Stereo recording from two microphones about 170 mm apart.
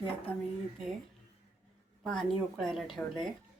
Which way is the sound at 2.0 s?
5° left (ahead or behind).